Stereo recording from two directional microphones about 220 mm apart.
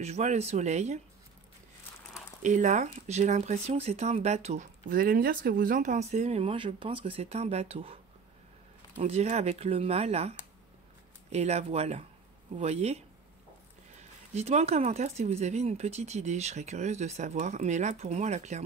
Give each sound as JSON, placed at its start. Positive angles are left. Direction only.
{"t": 0.0, "sound": "speech", "side_deg": -30}
{"t": 2.4, "sound": "speech", "side_deg": -35}
{"t": 11.3, "sound": "speech", "side_deg": -30}
{"t": 14.3, "sound": "speech", "side_deg": -30}